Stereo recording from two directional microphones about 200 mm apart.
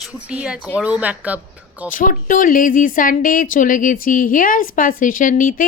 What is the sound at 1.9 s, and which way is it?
Speech, 40° left (ahead or behind).